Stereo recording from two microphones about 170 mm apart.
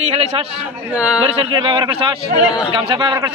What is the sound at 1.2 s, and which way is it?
Speech, 30° right (ahead or behind).